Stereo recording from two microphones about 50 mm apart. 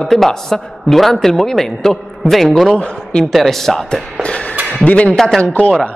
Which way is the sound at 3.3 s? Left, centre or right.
Centre.